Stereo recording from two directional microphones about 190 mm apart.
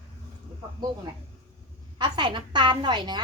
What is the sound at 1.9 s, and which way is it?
A woman's voice, 25° right (ahead or behind).